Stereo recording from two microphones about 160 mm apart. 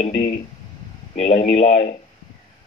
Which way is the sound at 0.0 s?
40° left (ahead or behind).